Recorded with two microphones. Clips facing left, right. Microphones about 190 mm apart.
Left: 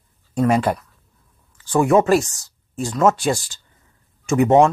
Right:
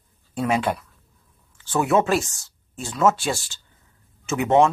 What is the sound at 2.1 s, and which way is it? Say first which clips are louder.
Speech: left 6 dB; centre (ahead or behind).